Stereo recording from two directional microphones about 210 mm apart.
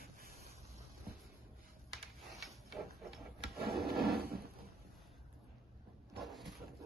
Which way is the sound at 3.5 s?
50° right (ahead or behind).